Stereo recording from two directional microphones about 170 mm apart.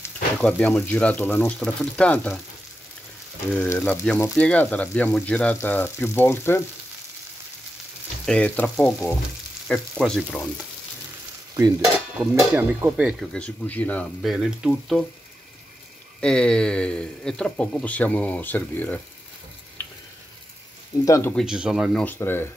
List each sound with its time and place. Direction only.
0.4 s speech: 5° left (ahead or behind)
3.5 s speech: 10° left (ahead or behind)
8.3 s speech: 10° left (ahead or behind)
11.5 s stir: 20° right (ahead or behind)
12.4 s speech: 15° right (ahead or behind)
13.3 s speech: 10° left (ahead or behind)
14.3 s speech: 5° right (ahead or behind)
16.2 s speech: 5° left (ahead or behind)
21.0 s speech: 20° left (ahead or behind)
21.4 s speech: 5° right (ahead or behind)
22.0 s speech: 15° left (ahead or behind)